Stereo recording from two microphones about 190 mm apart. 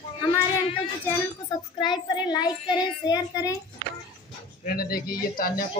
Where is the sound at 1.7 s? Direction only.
25° left (ahead or behind).